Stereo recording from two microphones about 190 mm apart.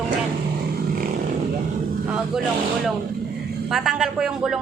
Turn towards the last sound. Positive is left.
turn(degrees=-5)  # may be behind; listen again after turning